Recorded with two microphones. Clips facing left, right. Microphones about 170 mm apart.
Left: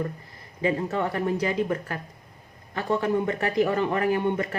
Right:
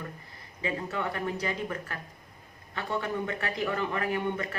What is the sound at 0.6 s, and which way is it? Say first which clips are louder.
A man's voice: left 7 dB; 35° left (ahead or behind).